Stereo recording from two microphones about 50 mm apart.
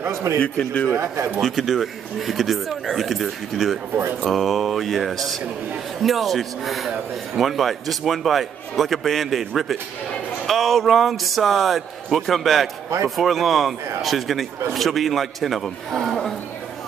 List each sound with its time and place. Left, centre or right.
0.1 s a man's voice: right
0.4 s a man's voice: centre
0.9 s speech: right
1.4 s a man's voice: centre